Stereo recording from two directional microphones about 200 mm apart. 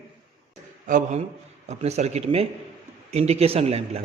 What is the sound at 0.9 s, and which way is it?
A man's voice, 40° right (ahead or behind).